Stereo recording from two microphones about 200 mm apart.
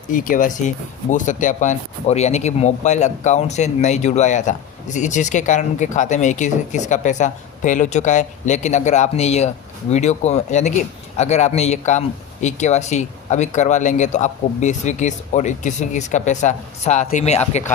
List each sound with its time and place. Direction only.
0.1 s speech: 45° left (ahead or behind)